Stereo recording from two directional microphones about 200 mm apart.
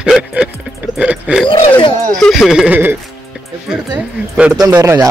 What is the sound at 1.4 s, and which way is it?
Wild animals, 25° left (ahead or behind).